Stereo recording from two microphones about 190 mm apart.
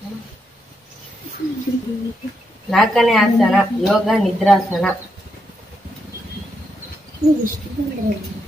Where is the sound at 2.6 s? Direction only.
Centre (ahead or behind).